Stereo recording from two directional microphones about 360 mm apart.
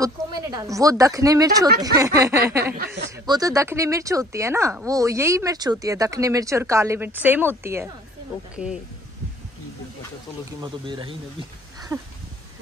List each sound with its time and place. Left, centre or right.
0.0 s speech: centre
2.6 s speech: right
3.3 s speech: centre
10.6 s speech: centre